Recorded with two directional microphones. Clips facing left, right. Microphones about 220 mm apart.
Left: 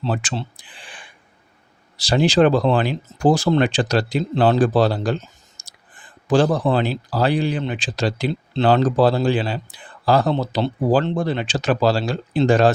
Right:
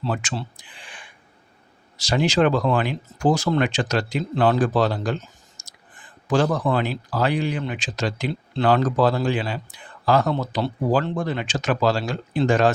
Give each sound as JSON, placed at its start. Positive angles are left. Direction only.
{"t": 0.0, "sound": "speech", "side_deg": 30}